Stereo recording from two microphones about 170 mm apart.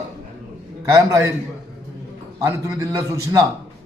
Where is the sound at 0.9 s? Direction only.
20° right (ahead or behind).